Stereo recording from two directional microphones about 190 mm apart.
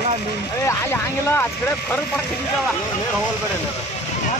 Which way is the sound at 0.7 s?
10° left (ahead or behind).